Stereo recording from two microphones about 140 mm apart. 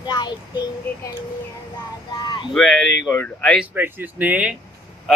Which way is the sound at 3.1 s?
15° left (ahead or behind).